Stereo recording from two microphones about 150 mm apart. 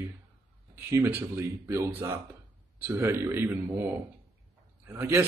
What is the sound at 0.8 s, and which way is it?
Speech, 15° right (ahead or behind).